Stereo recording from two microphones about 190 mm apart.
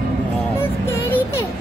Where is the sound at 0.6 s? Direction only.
10° left (ahead or behind).